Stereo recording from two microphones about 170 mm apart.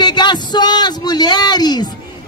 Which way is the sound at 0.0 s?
25° left (ahead or behind).